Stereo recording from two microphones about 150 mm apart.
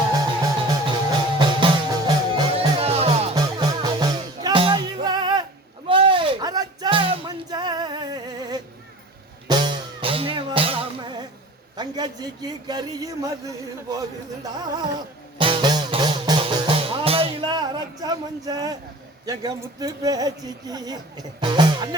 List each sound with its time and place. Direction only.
0.1 s music: 25° right (ahead or behind)
3.3 s music: 30° right (ahead or behind)
11.8 s a man's voice: 30° right (ahead or behind)
15.4 s music: 35° right (ahead or behind)
19.2 s speech: 25° right (ahead or behind)